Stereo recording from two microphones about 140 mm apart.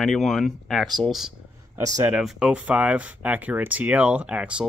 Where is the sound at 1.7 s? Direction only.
25° right (ahead or behind).